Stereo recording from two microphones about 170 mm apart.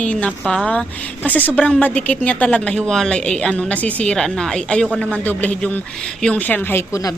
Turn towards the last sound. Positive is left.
turn(degrees=20)  # may be behind; listen again after turning